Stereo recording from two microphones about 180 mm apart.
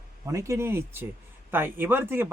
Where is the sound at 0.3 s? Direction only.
15° right (ahead or behind).